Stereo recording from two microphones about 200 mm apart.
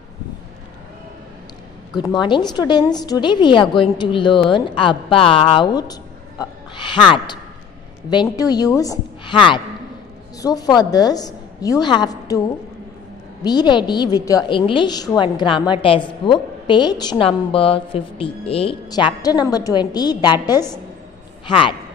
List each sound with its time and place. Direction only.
2.0 s a woman's voice: 20° left (ahead or behind)
13.4 s a woman's voice: 20° left (ahead or behind)
21.5 s a woman's voice: 25° left (ahead or behind)